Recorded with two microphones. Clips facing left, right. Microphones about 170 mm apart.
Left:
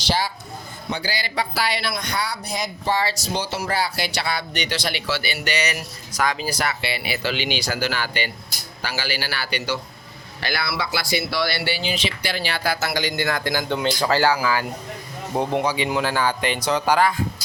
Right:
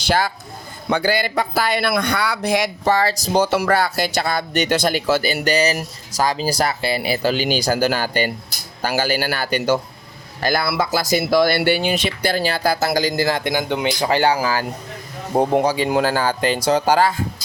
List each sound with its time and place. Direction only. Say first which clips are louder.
0.1 s speech: right 4 dB; 50° right (ahead or behind)
2.9 s speech: right 5 dB; 45° right (ahead or behind)
3.5 s speech: right 7 dB; 60° right (ahead or behind); by 13.4 s 35° right (ahead or behind)
13.4 s speech: right 2 dB; 20° right (ahead or behind)
14.3 s speech: right 2 dB; 40° right (ahead or behind)